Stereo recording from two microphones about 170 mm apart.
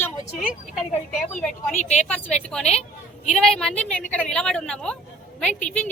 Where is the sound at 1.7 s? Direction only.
45° left (ahead or behind).